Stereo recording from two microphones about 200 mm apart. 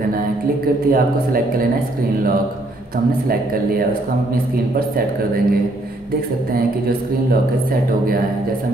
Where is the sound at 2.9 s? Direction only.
45° right (ahead or behind).